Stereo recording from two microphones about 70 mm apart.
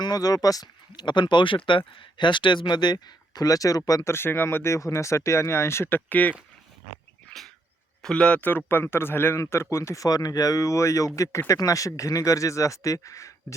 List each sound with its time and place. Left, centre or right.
0.0 s speech: left
4.0 s speech: left
8.0 s a man's voice: centre; by 9.4 s left
9.4 s speech: left